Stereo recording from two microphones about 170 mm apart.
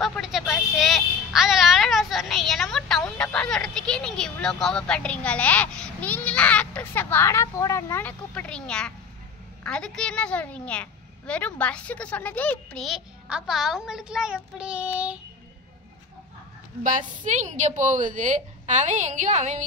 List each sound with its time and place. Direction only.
0.0 s a woman's voice: centre (ahead or behind)
16.8 s a woman's voice: 50° right (ahead or behind)